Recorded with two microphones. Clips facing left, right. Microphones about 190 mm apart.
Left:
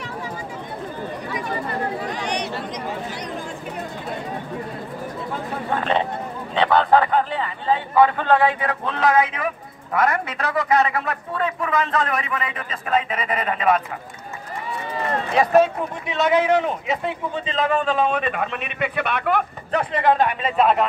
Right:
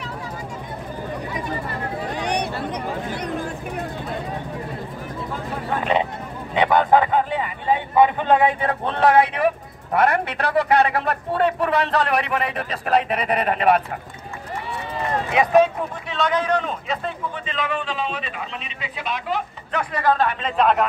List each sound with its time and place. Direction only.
2.2 s chatter: 55° right (ahead or behind)
5.8 s a sound: 10° right (ahead or behind)
6.5 s a man's voice: 15° right (ahead or behind)
9.9 s a man's voice: 65° right (ahead or behind)
15.3 s speech: 5° left (ahead or behind)
16.1 s a man's voice: 20° left (ahead or behind)
17.5 s a man's voice: 40° left (ahead or behind); by 19.4 s 60° left (ahead or behind)
19.7 s a man's voice: 30° left (ahead or behind); by 20.8 s 5° left (ahead or behind)